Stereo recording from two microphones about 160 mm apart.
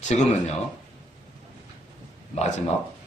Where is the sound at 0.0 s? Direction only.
45° left (ahead or behind).